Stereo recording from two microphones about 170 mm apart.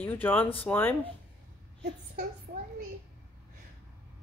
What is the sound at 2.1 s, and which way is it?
Speech, 60° right (ahead or behind).